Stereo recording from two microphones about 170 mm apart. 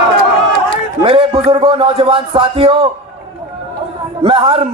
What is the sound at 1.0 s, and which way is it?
A man's voice, 35° right (ahead or behind).